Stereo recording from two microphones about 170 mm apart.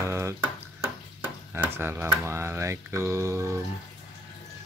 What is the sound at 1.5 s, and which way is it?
Speech, 15° right (ahead or behind).